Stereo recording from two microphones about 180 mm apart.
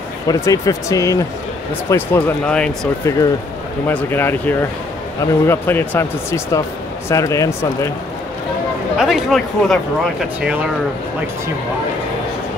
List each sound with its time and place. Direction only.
0.3 s speech: 20° left (ahead or behind)
8.9 s speech: centre (ahead or behind)